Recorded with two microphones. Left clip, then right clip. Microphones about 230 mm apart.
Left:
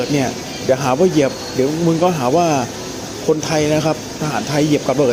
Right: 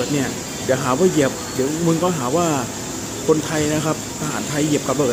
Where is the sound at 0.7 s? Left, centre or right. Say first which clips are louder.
Left 3 dB; centre.